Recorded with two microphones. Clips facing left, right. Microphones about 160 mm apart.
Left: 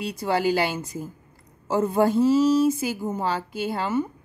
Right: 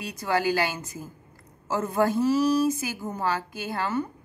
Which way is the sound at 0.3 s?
15° left (ahead or behind).